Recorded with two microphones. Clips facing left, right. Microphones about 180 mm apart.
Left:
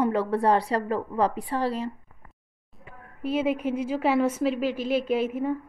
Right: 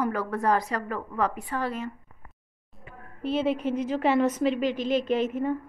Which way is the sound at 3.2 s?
10° left (ahead or behind).